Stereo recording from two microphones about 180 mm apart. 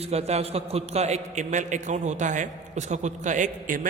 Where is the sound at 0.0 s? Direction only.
35° right (ahead or behind).